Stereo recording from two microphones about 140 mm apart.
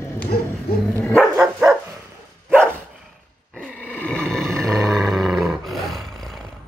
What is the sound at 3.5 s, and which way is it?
Roar, 10° left (ahead or behind).